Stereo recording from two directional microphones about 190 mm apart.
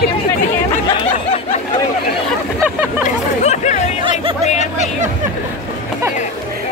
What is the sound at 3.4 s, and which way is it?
Hubbub, 40° left (ahead or behind).